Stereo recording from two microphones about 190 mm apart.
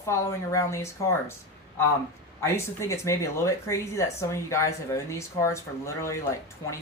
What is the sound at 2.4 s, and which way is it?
Speech, 15° left (ahead or behind).